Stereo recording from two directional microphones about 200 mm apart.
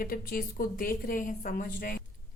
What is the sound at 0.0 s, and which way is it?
A woman's voice, 45° left (ahead or behind).